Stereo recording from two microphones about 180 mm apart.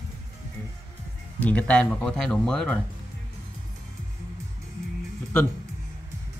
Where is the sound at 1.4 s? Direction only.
5° left (ahead or behind).